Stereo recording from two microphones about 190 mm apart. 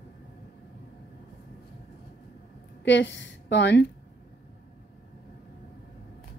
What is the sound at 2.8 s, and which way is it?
A woman's voice, 70° left (ahead or behind).